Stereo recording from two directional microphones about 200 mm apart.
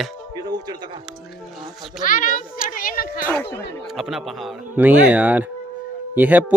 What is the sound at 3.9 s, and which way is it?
A man's voice, centre (ahead or behind).